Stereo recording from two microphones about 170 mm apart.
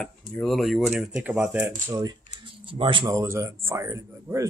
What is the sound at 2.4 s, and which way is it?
Speech, 30° right (ahead or behind).